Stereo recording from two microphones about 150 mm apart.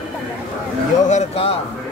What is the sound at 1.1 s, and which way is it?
Speech, 45° left (ahead or behind).